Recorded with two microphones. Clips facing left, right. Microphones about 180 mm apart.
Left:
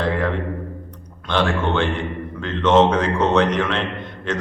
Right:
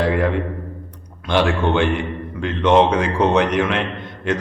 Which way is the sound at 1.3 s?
15° right (ahead or behind).